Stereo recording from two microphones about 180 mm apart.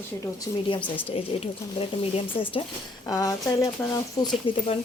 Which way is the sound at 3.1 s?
20° left (ahead or behind).